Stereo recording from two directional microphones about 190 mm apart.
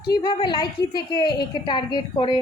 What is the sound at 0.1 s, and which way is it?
A woman's voice, 25° left (ahead or behind).